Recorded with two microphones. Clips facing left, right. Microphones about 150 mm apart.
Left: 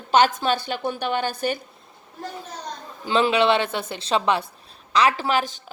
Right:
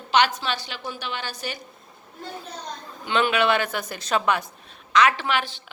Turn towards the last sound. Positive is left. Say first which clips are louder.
# left 3 dB
turn(degrees=40)  # may be behind; listen again after turning